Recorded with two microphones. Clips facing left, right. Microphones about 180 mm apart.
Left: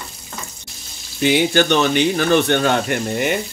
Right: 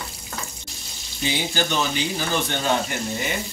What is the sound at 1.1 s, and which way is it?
Speech, 70° left (ahead or behind).